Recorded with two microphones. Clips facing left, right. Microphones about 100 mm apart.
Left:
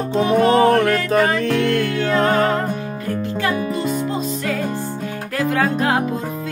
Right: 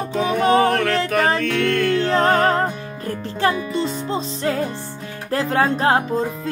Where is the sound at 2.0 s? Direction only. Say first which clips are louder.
Left 1 dB; 35° right (ahead or behind).